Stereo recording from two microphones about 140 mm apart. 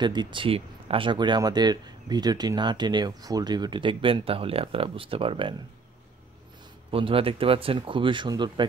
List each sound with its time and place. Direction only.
0.0 s speech: 30° right (ahead or behind)
6.9 s speech: 40° right (ahead or behind)